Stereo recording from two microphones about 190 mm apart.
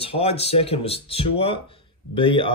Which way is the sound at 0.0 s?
30° left (ahead or behind).